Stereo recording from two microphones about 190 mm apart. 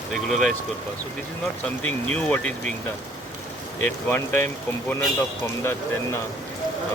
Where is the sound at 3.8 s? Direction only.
10° left (ahead or behind).